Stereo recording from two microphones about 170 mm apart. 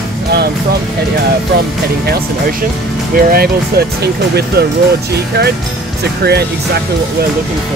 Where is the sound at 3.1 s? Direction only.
60° right (ahead or behind).